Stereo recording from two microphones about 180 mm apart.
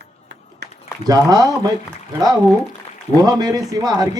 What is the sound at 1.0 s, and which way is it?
Speech, 20° right (ahead or behind).